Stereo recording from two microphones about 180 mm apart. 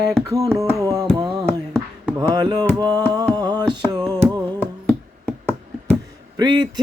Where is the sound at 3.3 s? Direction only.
25° right (ahead or behind).